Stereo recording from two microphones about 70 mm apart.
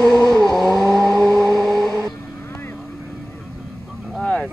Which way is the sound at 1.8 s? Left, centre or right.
Right.